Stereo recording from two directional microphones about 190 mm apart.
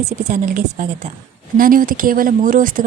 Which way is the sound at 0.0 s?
40° right (ahead or behind).